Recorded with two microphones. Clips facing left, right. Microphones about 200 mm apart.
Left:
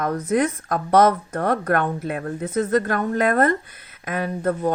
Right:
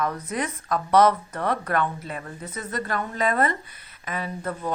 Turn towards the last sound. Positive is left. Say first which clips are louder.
# left 8 dB
turn(degrees=45)  # may be behind; listen again after turning